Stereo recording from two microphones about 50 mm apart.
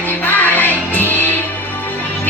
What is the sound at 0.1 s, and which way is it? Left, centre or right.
Music, left.